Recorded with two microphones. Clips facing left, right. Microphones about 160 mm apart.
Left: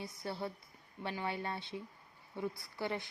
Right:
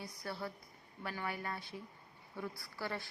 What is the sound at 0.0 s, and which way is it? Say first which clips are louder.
A woman's voice: left 3 dB; 25° left (ahead or behind).